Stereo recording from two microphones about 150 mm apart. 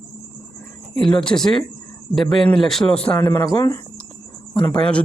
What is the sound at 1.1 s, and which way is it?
A man's voice, 5° left (ahead or behind).